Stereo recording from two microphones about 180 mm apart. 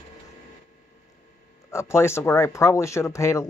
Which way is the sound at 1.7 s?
15° left (ahead or behind).